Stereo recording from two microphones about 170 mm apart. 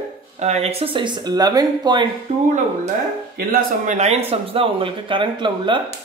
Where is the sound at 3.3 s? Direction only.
50° right (ahead or behind).